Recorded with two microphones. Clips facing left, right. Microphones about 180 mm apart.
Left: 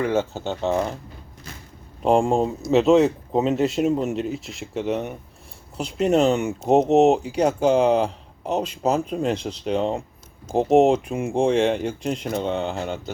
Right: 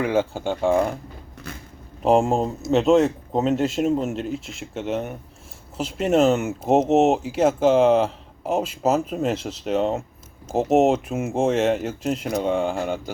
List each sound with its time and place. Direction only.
0.0 s speech: 10° right (ahead or behind)
1.5 s speech: 60° right (ahead or behind)
2.0 s speech: 5° right (ahead or behind)